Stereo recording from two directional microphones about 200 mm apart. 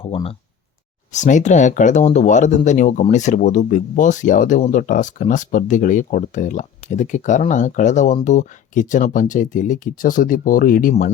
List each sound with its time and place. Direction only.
0.0 s speech: 30° left (ahead or behind)